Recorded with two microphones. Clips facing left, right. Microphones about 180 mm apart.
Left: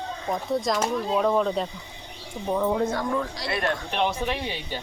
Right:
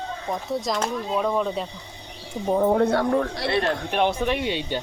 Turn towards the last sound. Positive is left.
turn(degrees=-70)  # may be behind; listen again after turning